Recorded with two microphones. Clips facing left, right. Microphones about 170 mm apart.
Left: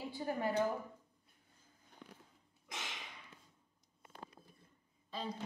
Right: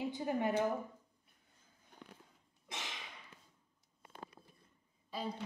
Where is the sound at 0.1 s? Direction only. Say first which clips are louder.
Left 2 dB; 20° right (ahead or behind).